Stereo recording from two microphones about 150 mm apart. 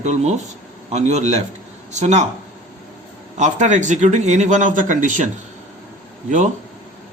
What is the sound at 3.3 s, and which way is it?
A man's voice, 55° right (ahead or behind).